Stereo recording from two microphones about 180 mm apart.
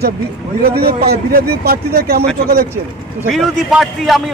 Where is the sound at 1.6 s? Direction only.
60° right (ahead or behind).